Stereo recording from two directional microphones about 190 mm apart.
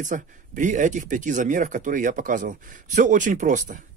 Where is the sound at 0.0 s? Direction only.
40° right (ahead or behind).